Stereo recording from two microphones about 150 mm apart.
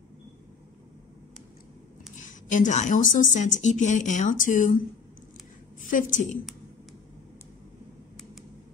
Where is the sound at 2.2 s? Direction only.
60° left (ahead or behind).